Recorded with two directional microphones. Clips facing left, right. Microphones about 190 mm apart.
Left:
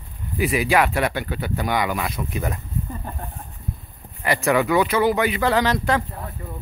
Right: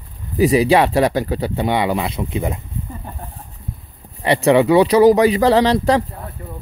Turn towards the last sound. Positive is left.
turn(degrees=-35)  # may be behind; listen again after turning